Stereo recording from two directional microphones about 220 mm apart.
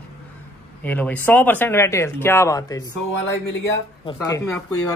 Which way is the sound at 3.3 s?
55° left (ahead or behind).